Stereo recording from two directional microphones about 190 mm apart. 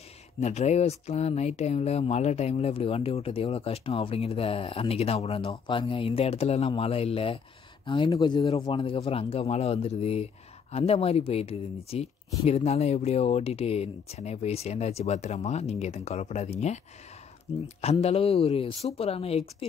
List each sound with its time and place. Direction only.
0.4 s speech: 35° left (ahead or behind)